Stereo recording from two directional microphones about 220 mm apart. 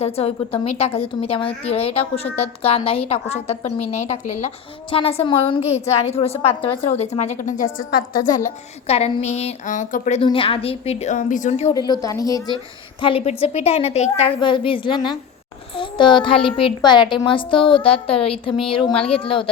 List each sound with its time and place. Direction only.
0.0 s a woman's voice: 25° left (ahead or behind)
8.9 s a woman's voice: 25° left (ahead or behind)
11.7 s a woman's voice: 20° left (ahead or behind)